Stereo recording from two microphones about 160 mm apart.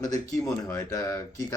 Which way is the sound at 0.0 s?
20° left (ahead or behind).